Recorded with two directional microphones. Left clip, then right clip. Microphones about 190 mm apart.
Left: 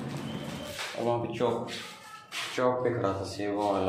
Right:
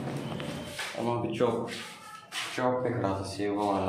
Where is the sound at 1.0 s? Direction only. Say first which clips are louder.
Even; centre (ahead or behind).